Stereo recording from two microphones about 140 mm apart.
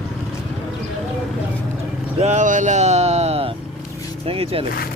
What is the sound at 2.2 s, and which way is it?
Speech, 60° right (ahead or behind).